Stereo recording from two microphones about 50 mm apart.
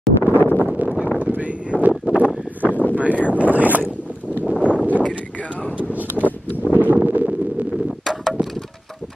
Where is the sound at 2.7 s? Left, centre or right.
Left.